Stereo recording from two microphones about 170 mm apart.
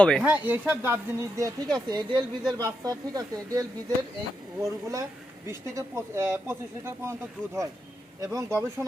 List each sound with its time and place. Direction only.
0.0 s speech: 5° left (ahead or behind)
0.3 s speech: 10° right (ahead or behind)